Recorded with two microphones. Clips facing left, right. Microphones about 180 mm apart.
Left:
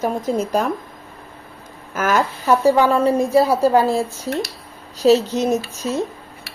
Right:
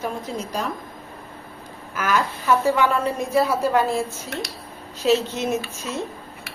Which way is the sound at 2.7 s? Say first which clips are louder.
Left 6 dB; 35° left (ahead or behind).